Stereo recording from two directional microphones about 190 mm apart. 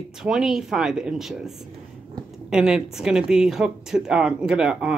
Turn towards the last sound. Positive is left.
turn(degrees=-5)  # may be behind; listen again after turning